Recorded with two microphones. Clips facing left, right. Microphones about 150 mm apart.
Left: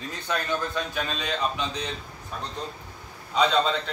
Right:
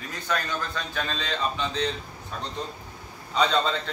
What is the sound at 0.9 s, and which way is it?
Speech, 10° left (ahead or behind).